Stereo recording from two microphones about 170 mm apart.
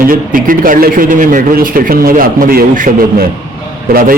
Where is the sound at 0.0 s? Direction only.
55° right (ahead or behind).